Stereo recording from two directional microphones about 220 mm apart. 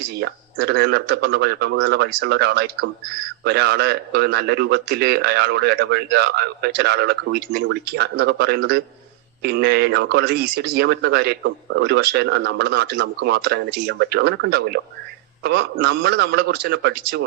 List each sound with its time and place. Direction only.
0.1 s a man's voice: 45° right (ahead or behind)